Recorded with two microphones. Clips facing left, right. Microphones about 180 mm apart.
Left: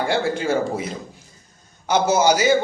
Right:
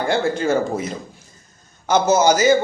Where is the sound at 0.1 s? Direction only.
10° left (ahead or behind).